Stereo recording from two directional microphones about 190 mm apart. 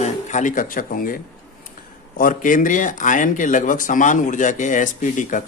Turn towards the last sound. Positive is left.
turn(degrees=45)  # may be behind; listen again after turning